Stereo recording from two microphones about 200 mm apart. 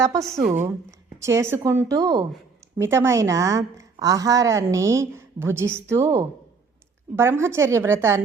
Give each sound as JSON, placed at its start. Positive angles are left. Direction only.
{"t": 0.0, "sound": "a woman's voice", "side_deg": -15}